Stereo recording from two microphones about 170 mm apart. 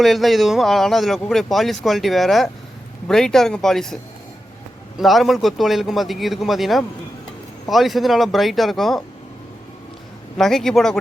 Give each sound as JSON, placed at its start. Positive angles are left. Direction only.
{"t": 0.0, "sound": "speech", "side_deg": 0}
{"t": 4.9, "sound": "speech", "side_deg": 0}
{"t": 10.3, "sound": "speech", "side_deg": 0}